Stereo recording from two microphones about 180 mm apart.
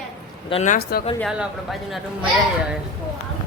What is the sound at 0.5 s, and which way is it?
Speech, 40° left (ahead or behind).